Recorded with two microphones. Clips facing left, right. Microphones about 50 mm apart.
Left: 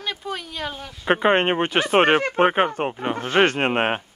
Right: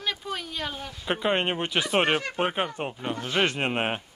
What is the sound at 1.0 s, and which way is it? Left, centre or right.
Speech, left.